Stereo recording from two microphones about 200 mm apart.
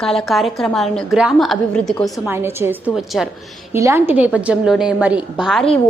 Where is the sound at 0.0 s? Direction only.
Centre (ahead or behind).